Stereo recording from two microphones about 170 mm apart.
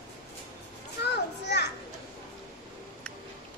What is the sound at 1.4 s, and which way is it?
Children playing, 90° left.